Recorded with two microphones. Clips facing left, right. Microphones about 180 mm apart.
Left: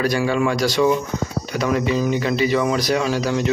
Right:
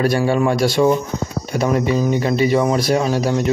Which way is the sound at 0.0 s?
30° right (ahead or behind).